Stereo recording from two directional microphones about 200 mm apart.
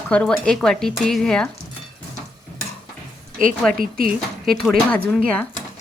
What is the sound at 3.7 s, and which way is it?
Speech, 45° right (ahead or behind).